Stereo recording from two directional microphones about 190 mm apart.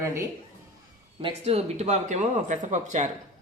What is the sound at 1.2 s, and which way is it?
Speech, 30° right (ahead or behind).